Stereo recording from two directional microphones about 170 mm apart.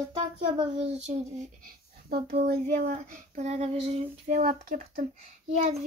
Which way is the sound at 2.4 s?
55° right (ahead or behind).